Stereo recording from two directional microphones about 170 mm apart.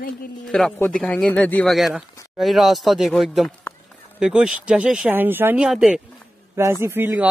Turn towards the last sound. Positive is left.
turn(degrees=-10)  # may be behind; listen again after turning